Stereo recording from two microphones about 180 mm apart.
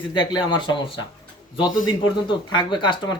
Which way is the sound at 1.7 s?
90° left.